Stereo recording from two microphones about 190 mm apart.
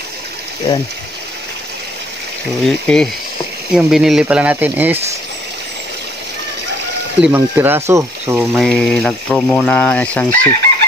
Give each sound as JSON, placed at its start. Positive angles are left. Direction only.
{"t": 2.6, "sound": "speech", "side_deg": 5}
{"t": 7.2, "sound": "speech", "side_deg": -5}
{"t": 8.4, "sound": "speech", "side_deg": 0}